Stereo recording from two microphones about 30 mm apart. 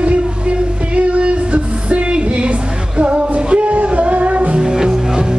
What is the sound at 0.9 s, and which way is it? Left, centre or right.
Music, right.